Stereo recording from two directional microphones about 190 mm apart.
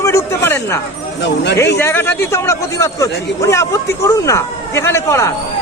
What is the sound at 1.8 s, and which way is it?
A man's voice, 10° left (ahead or behind).